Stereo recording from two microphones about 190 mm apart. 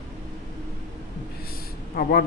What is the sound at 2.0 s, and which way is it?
Speech, 50° left (ahead or behind).